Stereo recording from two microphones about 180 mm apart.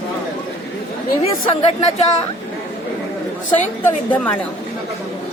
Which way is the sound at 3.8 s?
10° left (ahead or behind).